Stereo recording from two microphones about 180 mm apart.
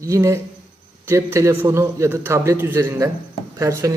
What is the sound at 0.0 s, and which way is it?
A man's voice, 15° right (ahead or behind).